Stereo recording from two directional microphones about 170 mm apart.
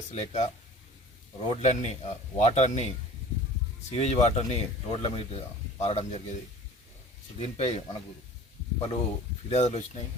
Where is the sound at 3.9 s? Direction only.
40° left (ahead or behind).